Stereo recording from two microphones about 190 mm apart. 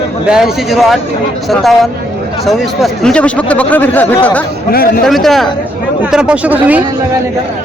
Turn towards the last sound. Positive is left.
turn(degrees=-10)  # may be behind; listen again after turning